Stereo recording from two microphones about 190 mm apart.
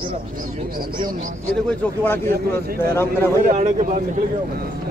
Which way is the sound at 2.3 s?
50° right (ahead or behind).